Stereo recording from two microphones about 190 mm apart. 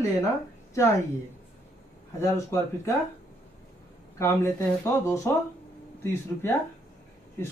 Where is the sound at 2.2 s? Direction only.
15° left (ahead or behind).